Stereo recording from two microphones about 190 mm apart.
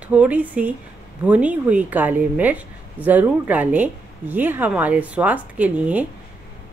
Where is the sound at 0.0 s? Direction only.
5° right (ahead or behind).